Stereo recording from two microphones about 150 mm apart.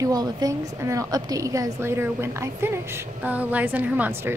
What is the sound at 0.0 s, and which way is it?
A woman's voice, 25° right (ahead or behind).